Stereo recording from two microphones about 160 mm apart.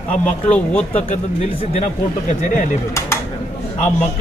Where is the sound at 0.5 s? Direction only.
10° left (ahead or behind).